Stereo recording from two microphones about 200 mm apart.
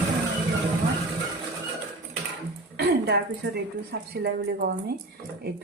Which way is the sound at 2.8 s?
55° right (ahead or behind).